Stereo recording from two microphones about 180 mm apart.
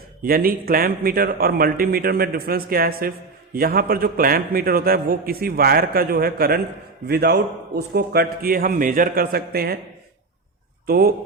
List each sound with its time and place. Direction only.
0.2 s a man's voice: 55° right (ahead or behind)
10.8 s speech: 55° right (ahead or behind)